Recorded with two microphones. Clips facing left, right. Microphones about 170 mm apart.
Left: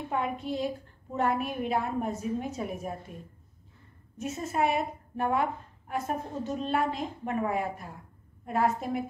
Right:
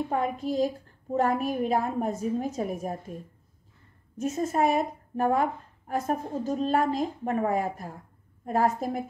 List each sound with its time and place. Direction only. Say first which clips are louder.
0.1 s a woman's voice: left 1 dB; 40° right (ahead or behind)
4.2 s a woman's voice: right 4 dB; 40° right (ahead or behind)